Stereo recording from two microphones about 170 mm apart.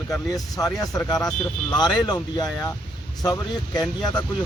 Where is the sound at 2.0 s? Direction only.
25° left (ahead or behind).